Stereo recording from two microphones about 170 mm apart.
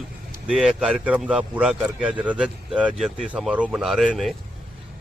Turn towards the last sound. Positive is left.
turn(degrees=0)  # may be behind; listen again after turning